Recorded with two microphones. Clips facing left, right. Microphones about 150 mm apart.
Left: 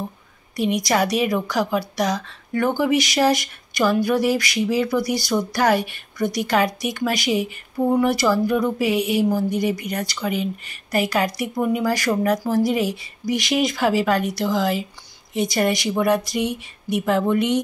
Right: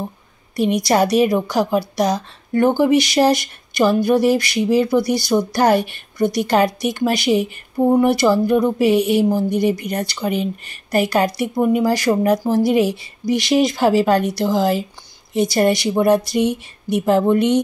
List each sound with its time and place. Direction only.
0.6 s a woman's voice: 30° right (ahead or behind)